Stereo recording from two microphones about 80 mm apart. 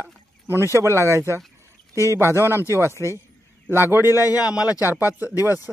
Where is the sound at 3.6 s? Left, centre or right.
Right.